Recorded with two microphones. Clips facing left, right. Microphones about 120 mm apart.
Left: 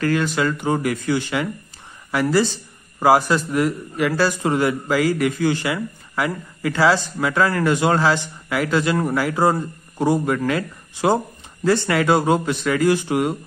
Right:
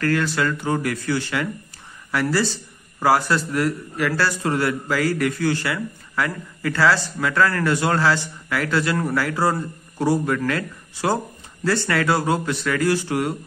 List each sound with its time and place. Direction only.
0.0 s a man's voice: 15° left (ahead or behind)